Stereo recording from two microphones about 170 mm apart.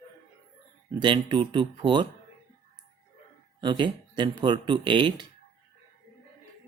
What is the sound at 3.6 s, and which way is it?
Speech, 25° right (ahead or behind).